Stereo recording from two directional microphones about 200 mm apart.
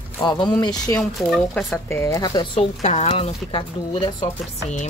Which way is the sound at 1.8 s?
15° left (ahead or behind).